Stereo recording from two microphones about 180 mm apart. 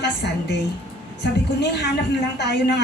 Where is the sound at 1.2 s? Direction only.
70° left (ahead or behind).